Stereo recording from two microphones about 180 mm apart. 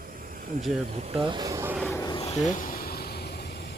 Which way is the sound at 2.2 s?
40° left (ahead or behind).